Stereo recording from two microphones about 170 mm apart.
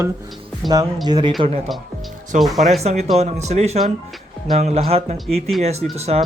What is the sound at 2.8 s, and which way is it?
Speech, 40° right (ahead or behind).